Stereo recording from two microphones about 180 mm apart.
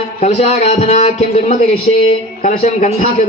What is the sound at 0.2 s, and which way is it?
A man's voice, 35° left (ahead or behind).